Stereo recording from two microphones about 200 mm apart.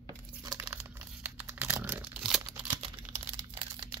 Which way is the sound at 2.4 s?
25° right (ahead or behind).